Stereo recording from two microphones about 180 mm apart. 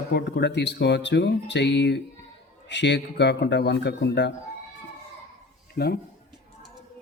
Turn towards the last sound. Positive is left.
turn(degrees=65)  # may be behind; listen again after turning